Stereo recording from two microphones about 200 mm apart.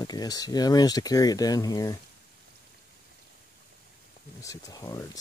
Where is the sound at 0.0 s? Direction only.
20° left (ahead or behind).